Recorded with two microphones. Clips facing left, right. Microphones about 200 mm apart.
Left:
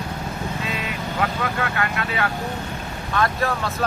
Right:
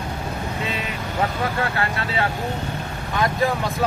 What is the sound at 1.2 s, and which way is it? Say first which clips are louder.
Speech: right 2 dB; 30° right (ahead or behind).